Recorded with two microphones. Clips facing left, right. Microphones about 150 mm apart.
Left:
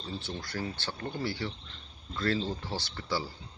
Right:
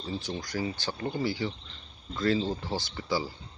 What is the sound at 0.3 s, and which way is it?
Speech, 15° right (ahead or behind).